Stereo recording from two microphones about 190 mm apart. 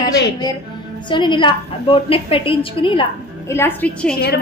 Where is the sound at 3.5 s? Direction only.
10° left (ahead or behind).